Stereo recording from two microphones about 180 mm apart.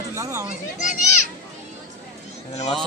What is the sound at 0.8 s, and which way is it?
Speech, 40° left (ahead or behind).